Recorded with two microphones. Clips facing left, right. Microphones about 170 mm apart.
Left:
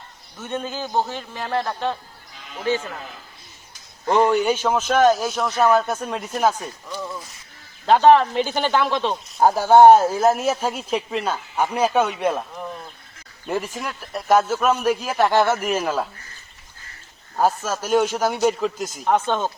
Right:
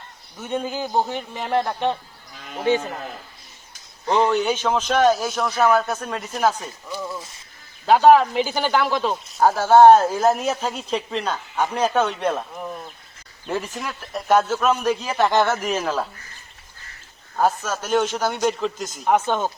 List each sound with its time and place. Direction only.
0.3 s a man's voice: 10° right (ahead or behind)
4.1 s a man's voice: 10° left (ahead or behind)
9.4 s a man's voice: 15° left (ahead or behind)
12.5 s speech: 5° right (ahead or behind)
13.5 s a man's voice: 10° left (ahead or behind)
17.3 s a man's voice: 5° left (ahead or behind)
19.0 s a man's voice: 10° right (ahead or behind)